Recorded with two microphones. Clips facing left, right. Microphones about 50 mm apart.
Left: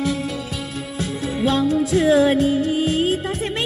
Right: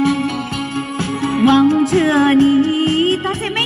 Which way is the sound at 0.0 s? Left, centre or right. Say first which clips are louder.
Right 7 dB; right.